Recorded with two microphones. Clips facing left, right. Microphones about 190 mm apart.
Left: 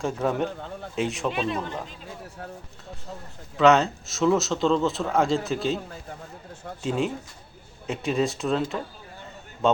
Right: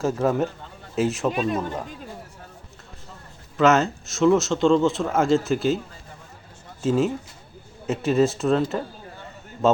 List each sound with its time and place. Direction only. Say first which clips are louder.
0.0 s a man's voice: right 3 dB; centre (ahead or behind)
1.3 s a man's voice: right 3 dB; 45° right (ahead or behind)
3.6 s a man's voice: even; centre (ahead or behind)
6.8 s a man's voice: right 5 dB; centre (ahead or behind)